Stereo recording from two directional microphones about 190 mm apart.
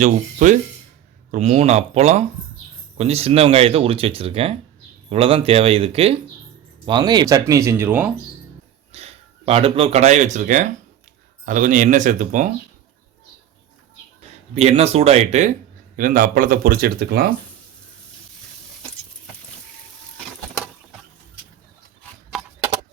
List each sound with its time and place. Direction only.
0.0 s speech: 40° right (ahead or behind); by 8.1 s 10° right (ahead or behind)
8.9 s speech: 35° right (ahead or behind)
14.5 s speech: 35° right (ahead or behind)
16.0 s speech: 45° right (ahead or behind)